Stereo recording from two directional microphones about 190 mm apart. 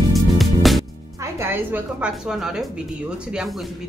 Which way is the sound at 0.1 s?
Centre (ahead or behind).